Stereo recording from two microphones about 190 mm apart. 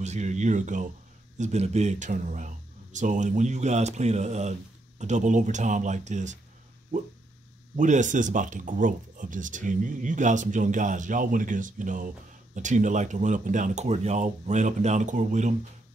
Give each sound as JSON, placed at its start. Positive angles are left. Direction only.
{"t": 0.0, "sound": "speech", "side_deg": -35}
{"t": 7.7, "sound": "speech", "side_deg": -40}